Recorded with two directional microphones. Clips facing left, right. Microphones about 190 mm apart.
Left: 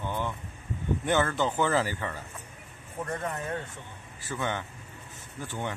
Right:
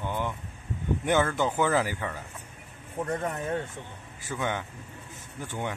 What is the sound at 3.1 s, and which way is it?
Speech, 20° right (ahead or behind).